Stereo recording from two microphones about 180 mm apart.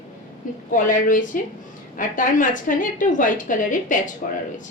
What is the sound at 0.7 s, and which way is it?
A woman's voice, 50° left (ahead or behind).